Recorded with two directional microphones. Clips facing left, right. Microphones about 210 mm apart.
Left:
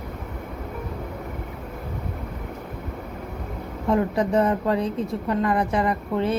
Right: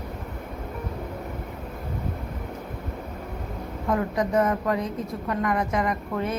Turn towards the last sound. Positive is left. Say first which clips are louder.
# left 4 dB
turn(degrees=30)  # may be behind; listen again after turning